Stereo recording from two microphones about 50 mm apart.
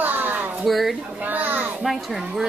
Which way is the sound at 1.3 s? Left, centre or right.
Right.